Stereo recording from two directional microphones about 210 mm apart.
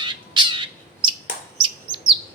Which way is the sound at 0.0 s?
20° right (ahead or behind).